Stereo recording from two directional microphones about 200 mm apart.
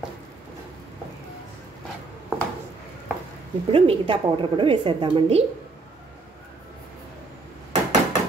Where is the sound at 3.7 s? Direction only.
25° right (ahead or behind).